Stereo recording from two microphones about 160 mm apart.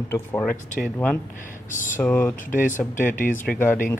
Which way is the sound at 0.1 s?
10° left (ahead or behind).